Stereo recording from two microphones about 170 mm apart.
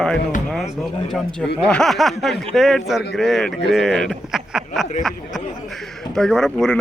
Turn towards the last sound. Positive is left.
turn(degrees=5)  # may be behind; listen again after turning